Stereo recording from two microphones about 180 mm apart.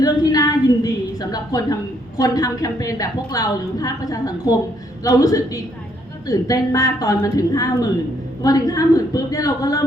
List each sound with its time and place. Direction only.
0.0 s a woman's voice: 20° left (ahead or behind)